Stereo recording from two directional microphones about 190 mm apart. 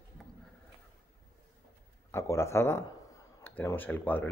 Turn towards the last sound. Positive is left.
turn(degrees=10)  # may be behind; listen again after turning